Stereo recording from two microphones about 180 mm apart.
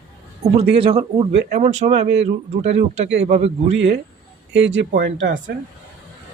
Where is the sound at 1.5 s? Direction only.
40° right (ahead or behind).